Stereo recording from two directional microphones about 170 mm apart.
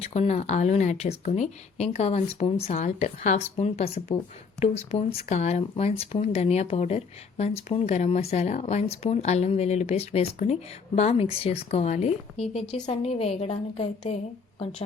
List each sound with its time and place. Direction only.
0.0 s speech: 40° left (ahead or behind)